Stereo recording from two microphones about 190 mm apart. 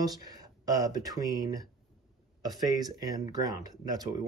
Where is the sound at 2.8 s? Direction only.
20° right (ahead or behind).